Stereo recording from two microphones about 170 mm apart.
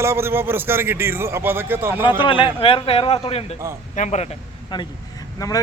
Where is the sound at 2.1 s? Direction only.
30° left (ahead or behind).